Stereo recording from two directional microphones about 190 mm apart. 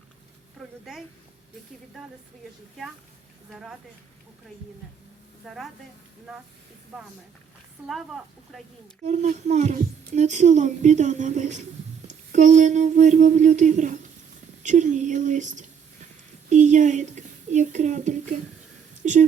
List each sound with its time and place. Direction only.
0.6 s a sound: centre (ahead or behind)
3.5 s speech: centre (ahead or behind)
5.5 s speech: centre (ahead or behind)
7.9 s speech: centre (ahead or behind)
9.0 s a child's voice: 40° right (ahead or behind)